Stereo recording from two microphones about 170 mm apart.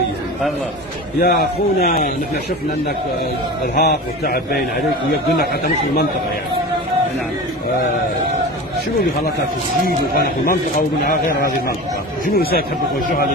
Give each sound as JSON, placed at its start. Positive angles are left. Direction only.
{"t": 1.2, "sound": "a man's voice", "side_deg": 60}
{"t": 3.7, "sound": "a man's voice", "side_deg": 65}
{"t": 5.5, "sound": "speech", "side_deg": 70}
{"t": 10.1, "sound": "a man's voice", "side_deg": 60}